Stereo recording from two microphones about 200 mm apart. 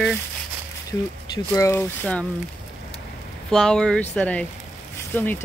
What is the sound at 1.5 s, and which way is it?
Speech, 15° left (ahead or behind).